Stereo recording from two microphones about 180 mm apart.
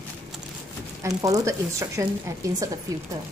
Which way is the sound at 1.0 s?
20° right (ahead or behind).